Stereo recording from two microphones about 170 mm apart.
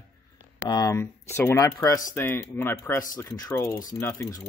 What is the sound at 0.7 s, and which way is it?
Speech, 20° left (ahead or behind).